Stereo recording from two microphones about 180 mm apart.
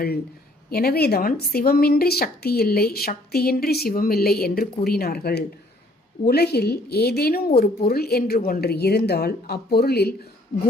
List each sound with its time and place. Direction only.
0.7 s a woman's voice: 60° left (ahead or behind)